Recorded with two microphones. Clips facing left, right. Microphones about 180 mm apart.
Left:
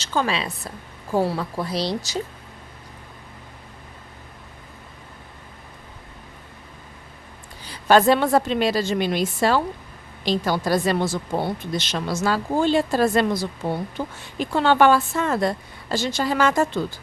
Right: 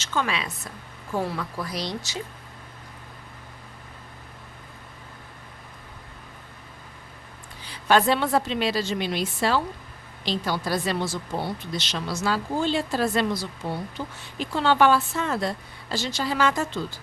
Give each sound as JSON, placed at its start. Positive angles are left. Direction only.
{"t": 0.0, "sound": "speech", "side_deg": 35}
{"t": 7.7, "sound": "a woman's voice", "side_deg": 40}